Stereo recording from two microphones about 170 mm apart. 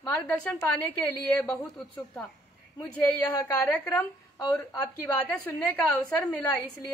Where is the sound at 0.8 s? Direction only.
10° left (ahead or behind).